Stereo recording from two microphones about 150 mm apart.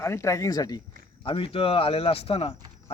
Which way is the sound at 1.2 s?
35° left (ahead or behind).